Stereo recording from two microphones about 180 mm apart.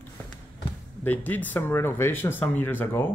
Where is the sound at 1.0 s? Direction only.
10° left (ahead or behind).